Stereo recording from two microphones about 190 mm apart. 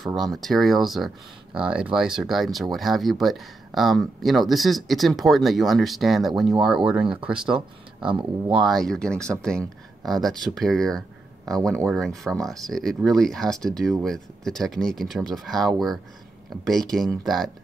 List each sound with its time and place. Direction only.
0.0 s speech: centre (ahead or behind)
8.0 s speech: 25° right (ahead or behind)
8.5 s speech: centre (ahead or behind)